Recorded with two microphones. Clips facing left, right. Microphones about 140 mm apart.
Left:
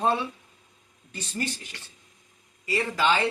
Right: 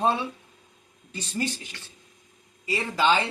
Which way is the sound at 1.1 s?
15° right (ahead or behind).